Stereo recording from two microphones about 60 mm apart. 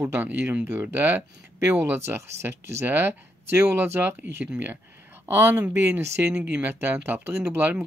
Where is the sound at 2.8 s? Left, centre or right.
Right.